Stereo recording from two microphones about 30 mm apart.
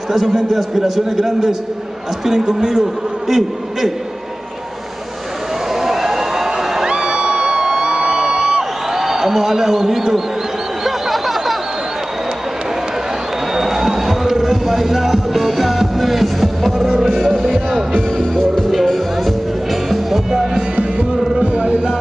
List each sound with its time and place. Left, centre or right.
0.1 s a man's voice: centre
5.7 s a sound: centre
6.9 s music: right
8.9 s a man's voice: centre
10.8 s a sound: centre
13.5 s music: centre
18.4 s music: centre
19.7 s music: centre
21.4 s music: right